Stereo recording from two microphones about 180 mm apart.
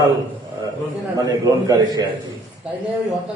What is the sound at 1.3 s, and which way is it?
Speech, 25° right (ahead or behind).